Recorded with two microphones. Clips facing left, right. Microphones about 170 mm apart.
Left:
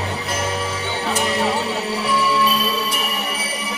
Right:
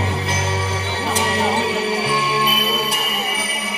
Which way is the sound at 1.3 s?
65° right (ahead or behind).